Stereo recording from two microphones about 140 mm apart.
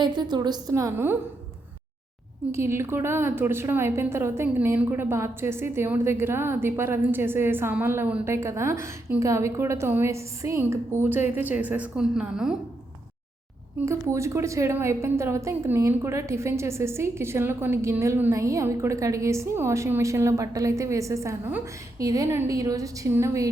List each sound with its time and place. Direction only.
0.0 s a woman's voice: 30° right (ahead or behind)
2.5 s a woman's voice: 20° right (ahead or behind)
13.8 s a woman's voice: 20° right (ahead or behind)